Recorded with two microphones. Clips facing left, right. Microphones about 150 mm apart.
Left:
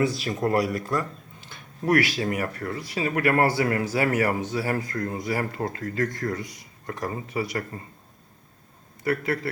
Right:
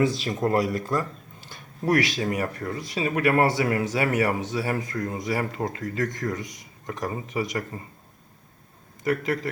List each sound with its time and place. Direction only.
0.0 s speech: 25° right (ahead or behind)
2.0 s speech: 10° left (ahead or behind)
2.3 s speech: 25° right (ahead or behind)
9.0 s speech: 15° right (ahead or behind)